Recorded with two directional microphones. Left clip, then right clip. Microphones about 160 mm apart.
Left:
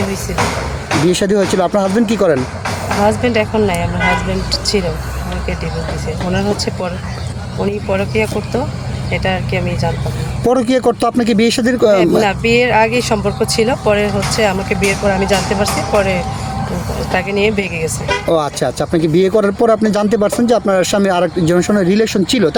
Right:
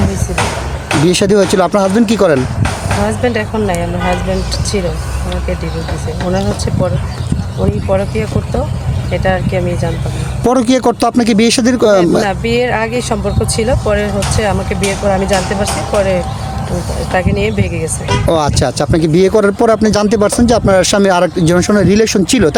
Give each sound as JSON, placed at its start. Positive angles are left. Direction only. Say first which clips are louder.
{"t": 1.0, "sound": "speech", "louder": "right 4 dB", "side_deg": -45}
{"t": 3.1, "sound": "speech", "louder": "left 1 dB", "side_deg": -20}
{"t": 7.9, "sound": "speech", "louder": "even", "side_deg": -15}
{"t": 10.4, "sound": "speech", "louder": "right 2 dB", "side_deg": -55}
{"t": 11.0, "sound": "speech", "louder": "right 2 dB", "side_deg": -40}
{"t": 12.2, "sound": "speech", "louder": "left 1 dB", "side_deg": -15}
{"t": 18.3, "sound": "speech", "louder": "right 3 dB", "side_deg": -45}